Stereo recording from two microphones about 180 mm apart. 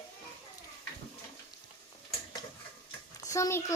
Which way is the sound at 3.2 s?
15° left (ahead or behind).